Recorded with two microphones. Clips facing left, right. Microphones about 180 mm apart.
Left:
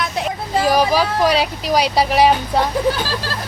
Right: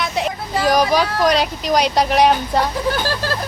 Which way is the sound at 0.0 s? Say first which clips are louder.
Right 1 dB; centre (ahead or behind).